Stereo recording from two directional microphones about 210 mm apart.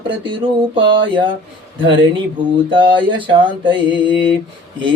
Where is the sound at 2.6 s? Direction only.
25° right (ahead or behind).